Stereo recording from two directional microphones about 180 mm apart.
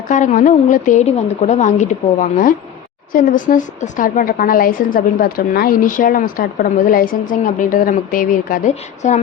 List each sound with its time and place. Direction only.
0.1 s a woman's voice: 45° left (ahead or behind)